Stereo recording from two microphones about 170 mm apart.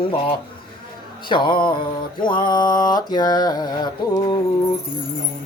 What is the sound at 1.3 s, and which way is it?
Mantra, 30° left (ahead or behind).